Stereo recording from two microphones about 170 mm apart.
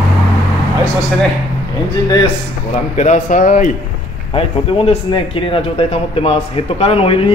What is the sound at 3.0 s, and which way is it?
Speech, 45° left (ahead or behind).